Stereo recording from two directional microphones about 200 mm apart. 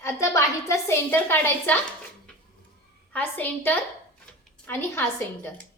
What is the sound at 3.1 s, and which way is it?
A woman's voice, 10° left (ahead or behind).